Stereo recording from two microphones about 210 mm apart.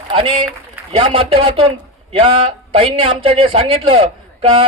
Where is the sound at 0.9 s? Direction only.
25° right (ahead or behind).